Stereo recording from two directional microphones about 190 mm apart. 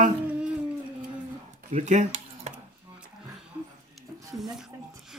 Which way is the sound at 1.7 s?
40° right (ahead or behind).